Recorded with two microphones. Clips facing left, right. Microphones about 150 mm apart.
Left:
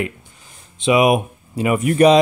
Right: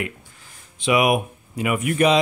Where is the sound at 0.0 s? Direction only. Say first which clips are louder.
Left 5 dB; 25° left (ahead or behind).